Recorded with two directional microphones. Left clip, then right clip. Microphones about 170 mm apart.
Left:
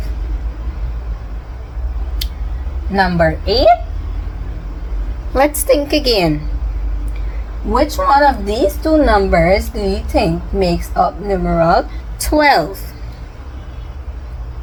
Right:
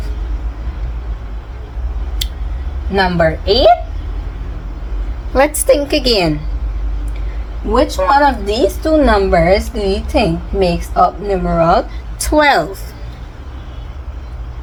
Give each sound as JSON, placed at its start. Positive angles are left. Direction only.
{"t": 2.2, "sound": "a sound", "side_deg": -10}
{"t": 2.9, "sound": "a woman's voice", "side_deg": -5}
{"t": 5.3, "sound": "a woman's voice", "side_deg": -10}
{"t": 7.7, "sound": "a woman's voice", "side_deg": -10}